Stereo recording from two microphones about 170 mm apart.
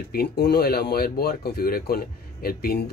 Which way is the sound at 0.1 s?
70° left (ahead or behind).